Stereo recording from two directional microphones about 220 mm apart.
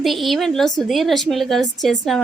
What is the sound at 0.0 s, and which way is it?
A woman's voice, centre (ahead or behind).